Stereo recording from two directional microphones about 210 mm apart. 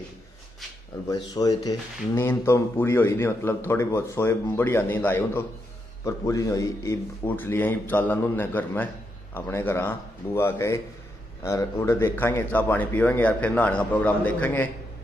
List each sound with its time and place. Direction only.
1.0 s speech: 15° left (ahead or behind)